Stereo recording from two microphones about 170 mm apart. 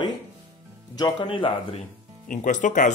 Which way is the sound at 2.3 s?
45° left (ahead or behind).